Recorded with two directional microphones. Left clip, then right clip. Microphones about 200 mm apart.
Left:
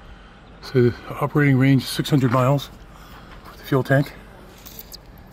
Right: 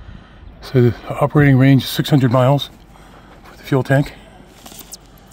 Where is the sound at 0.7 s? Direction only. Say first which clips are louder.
Right 3 dB; 55° right (ahead or behind); by 2.7 s 35° right (ahead or behind).